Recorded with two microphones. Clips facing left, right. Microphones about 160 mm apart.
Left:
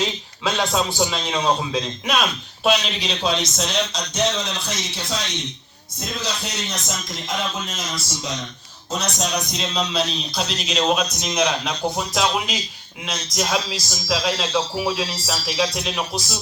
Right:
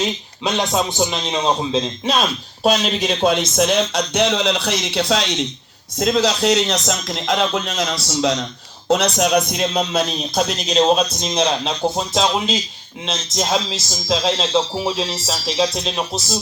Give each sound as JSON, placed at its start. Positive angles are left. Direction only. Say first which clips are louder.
{"t": 0.0, "sound": "a man's voice", "louder": "right 2 dB", "side_deg": -20}
{"t": 2.6, "sound": "a man's voice", "louder": "right 4 dB", "side_deg": -45}
{"t": 6.0, "sound": "speech", "louder": "right 12 dB", "side_deg": -90}
{"t": 8.9, "sound": "a man's voice", "louder": "right 9 dB", "side_deg": -65}